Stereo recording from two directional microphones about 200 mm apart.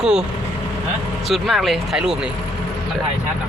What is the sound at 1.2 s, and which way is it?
Speech, centre (ahead or behind).